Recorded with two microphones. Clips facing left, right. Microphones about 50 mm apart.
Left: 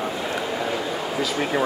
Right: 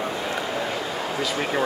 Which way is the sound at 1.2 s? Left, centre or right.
Centre.